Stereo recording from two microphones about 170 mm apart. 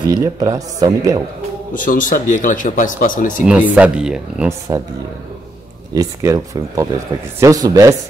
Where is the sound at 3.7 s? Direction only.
5° right (ahead or behind).